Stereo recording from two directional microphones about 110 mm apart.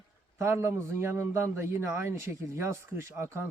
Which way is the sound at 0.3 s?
25° right (ahead or behind).